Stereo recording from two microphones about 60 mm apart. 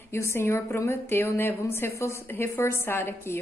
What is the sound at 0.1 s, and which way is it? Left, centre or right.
A woman's voice, left.